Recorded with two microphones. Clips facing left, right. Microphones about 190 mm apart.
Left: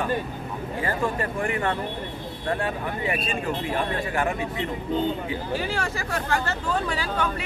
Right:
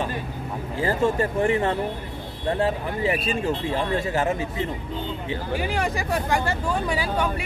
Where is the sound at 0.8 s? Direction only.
25° right (ahead or behind).